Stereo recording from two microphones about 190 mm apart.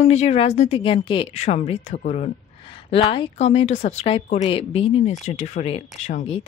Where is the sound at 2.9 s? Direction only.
25° left (ahead or behind).